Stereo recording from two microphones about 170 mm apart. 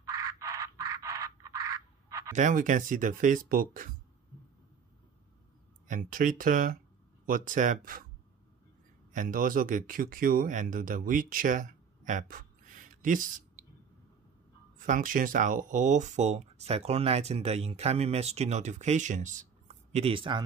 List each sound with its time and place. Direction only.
0.1 s a sound: 20° right (ahead or behind)
2.3 s speech: 50° right (ahead or behind)
5.9 s speech: 50° right (ahead or behind)
9.1 s speech: 50° right (ahead or behind)
14.8 s speech: 50° right (ahead or behind); by 20.4 s 30° right (ahead or behind)